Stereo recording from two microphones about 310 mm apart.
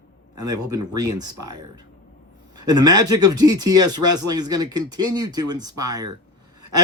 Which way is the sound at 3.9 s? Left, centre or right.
Right.